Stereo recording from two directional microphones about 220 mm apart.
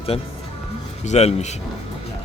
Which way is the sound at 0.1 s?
25° left (ahead or behind).